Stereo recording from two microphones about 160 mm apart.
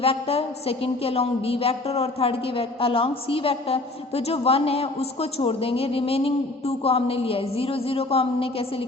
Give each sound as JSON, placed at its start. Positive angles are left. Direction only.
{"t": 0.0, "sound": "a woman's voice", "side_deg": 40}